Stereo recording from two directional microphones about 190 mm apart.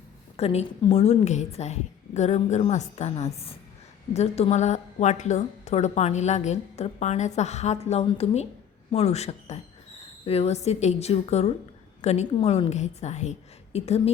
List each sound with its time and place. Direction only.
0.3 s a woman's voice: 30° left (ahead or behind)